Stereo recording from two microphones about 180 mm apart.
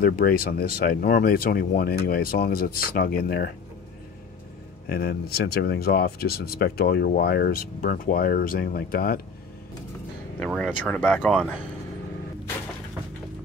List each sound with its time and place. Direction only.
0.0 s speech: 55° left (ahead or behind)
4.8 s speech: 60° left (ahead or behind)
10.4 s speech: 5° left (ahead or behind)